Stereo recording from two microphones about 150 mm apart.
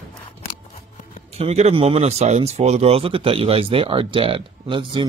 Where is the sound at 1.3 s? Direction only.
45° right (ahead or behind).